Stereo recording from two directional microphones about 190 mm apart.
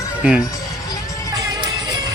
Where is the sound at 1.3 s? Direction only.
20° right (ahead or behind).